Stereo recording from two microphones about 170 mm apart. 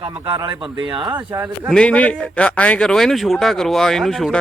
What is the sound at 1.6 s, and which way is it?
A man's voice, 5° left (ahead or behind).